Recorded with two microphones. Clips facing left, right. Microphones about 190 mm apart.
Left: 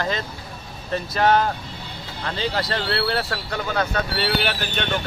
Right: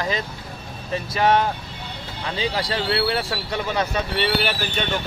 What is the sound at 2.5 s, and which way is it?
Speech, 5° right (ahead or behind).